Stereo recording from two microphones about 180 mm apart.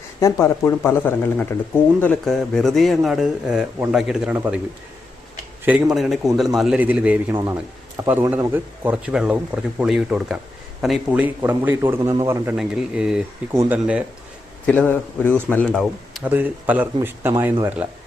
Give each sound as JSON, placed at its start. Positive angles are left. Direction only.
{"t": 0.4, "sound": "speech", "side_deg": 15}
{"t": 5.6, "sound": "speech", "side_deg": -5}
{"t": 12.5, "sound": "speech", "side_deg": -5}
{"t": 13.5, "sound": "speech", "side_deg": -15}
{"t": 14.7, "sound": "speech", "side_deg": 10}